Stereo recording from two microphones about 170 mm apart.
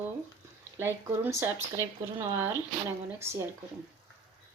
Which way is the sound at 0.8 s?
15° right (ahead or behind).